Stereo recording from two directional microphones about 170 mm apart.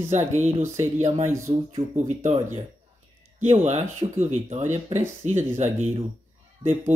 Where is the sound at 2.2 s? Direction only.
40° right (ahead or behind).